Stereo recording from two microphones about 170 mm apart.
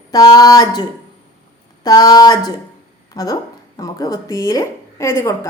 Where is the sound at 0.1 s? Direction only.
20° left (ahead or behind).